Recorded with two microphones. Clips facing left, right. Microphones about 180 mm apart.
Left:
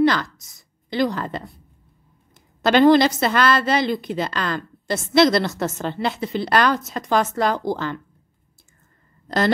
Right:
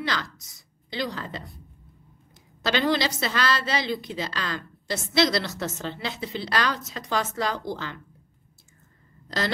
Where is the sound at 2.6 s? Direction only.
50° left (ahead or behind).